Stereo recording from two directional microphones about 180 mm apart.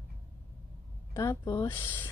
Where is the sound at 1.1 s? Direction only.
15° left (ahead or behind).